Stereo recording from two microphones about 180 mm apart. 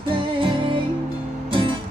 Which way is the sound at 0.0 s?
30° right (ahead or behind).